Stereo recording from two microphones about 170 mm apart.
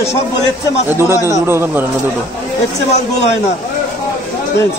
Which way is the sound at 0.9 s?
15° right (ahead or behind).